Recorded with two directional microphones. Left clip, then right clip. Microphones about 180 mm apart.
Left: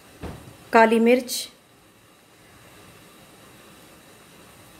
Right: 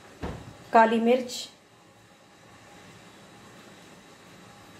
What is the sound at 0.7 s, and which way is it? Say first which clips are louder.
Speech: left 4 dB; 50° left (ahead or behind).